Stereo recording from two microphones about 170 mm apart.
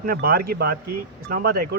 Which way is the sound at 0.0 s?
60° right (ahead or behind).